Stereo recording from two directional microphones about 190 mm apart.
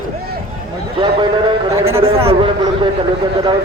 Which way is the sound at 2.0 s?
30° right (ahead or behind).